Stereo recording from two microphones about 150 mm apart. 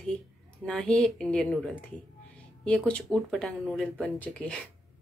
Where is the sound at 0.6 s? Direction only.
5° left (ahead or behind).